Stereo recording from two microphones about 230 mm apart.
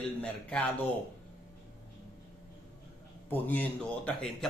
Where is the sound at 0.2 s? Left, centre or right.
Centre.